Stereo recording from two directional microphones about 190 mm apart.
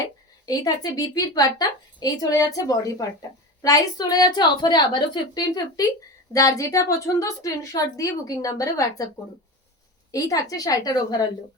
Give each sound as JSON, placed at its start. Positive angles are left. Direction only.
{"t": 0.0, "sound": "a woman's voice", "side_deg": 20}
{"t": 10.1, "sound": "a woman's voice", "side_deg": 20}